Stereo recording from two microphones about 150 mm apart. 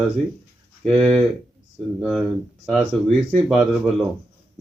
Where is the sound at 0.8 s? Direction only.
5° left (ahead or behind).